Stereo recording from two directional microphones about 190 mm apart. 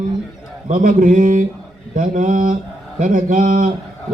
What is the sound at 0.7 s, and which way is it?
A man's voice, 45° right (ahead or behind).